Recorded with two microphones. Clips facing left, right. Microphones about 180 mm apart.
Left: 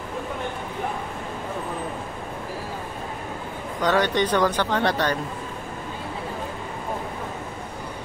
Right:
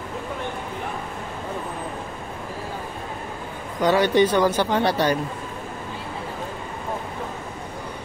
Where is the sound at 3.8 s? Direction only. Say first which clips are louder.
Right 4 dB; 10° right (ahead or behind).